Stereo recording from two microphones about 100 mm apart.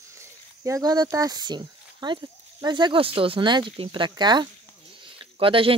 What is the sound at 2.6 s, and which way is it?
Speech, 50° right (ahead or behind).